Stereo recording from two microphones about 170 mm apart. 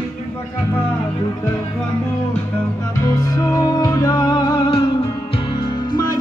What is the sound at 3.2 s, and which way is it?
Music, 20° left (ahead or behind).